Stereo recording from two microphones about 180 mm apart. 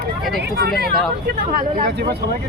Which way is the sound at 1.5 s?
45° right (ahead or behind).